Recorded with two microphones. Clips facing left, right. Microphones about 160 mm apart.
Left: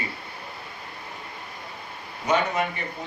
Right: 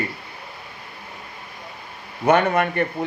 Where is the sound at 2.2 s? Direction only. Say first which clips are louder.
Right 6 dB; 60° right (ahead or behind).